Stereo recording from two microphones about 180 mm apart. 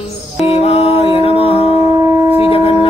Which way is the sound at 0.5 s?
35° left (ahead or behind).